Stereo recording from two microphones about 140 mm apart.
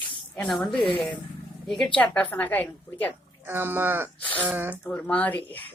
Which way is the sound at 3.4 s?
15° right (ahead or behind).